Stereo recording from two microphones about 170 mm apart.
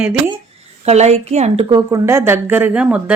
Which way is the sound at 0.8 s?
40° right (ahead or behind).